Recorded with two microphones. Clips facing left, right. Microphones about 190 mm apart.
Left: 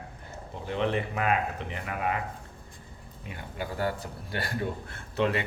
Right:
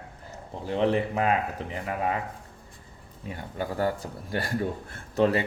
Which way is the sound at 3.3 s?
40° right (ahead or behind).